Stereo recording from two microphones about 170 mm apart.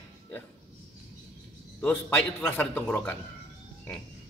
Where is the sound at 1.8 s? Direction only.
10° left (ahead or behind).